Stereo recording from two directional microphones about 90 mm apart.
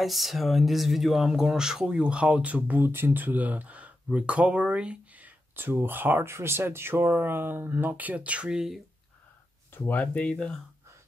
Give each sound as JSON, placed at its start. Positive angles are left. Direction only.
{"t": 0.0, "sound": "speech", "side_deg": 0}
{"t": 9.7, "sound": "speech", "side_deg": 25}